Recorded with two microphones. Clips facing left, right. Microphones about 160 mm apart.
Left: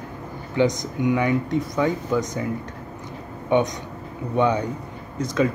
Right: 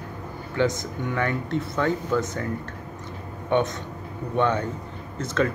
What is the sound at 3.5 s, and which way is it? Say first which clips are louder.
A man's voice: left 2 dB; 15° left (ahead or behind).